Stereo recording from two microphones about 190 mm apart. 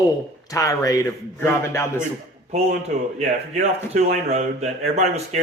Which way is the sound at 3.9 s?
35° right (ahead or behind).